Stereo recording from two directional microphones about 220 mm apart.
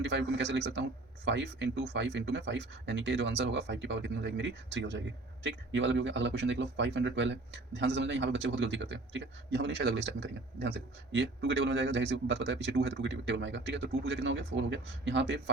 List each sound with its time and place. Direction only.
0.0 s speech: 50° right (ahead or behind)